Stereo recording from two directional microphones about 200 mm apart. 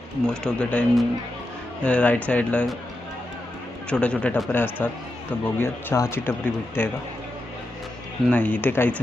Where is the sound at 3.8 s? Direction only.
5° left (ahead or behind).